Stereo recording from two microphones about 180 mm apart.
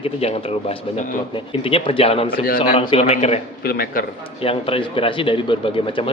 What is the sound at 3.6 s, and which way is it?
Speech, 60° left (ahead or behind).